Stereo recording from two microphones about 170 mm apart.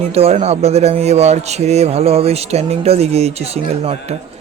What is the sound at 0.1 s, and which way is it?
A man's voice, 35° right (ahead or behind).